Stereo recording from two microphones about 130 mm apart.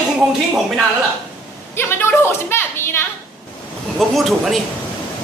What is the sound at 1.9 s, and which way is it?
Speech, 15° left (ahead or behind).